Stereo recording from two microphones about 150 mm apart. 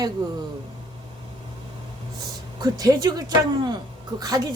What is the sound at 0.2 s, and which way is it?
Speech, 25° right (ahead or behind).